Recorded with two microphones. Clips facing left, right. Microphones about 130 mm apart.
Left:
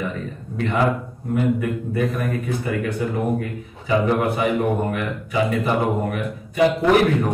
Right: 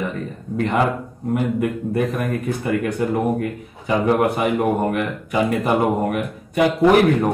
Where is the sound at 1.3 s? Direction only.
55° right (ahead or behind).